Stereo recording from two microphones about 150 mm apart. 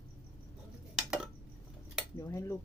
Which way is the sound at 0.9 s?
5° right (ahead or behind).